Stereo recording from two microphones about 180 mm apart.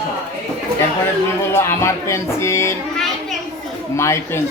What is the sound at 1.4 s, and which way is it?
Speech, 15° left (ahead or behind).